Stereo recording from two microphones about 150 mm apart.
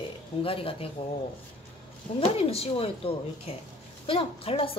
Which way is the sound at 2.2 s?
40° left (ahead or behind).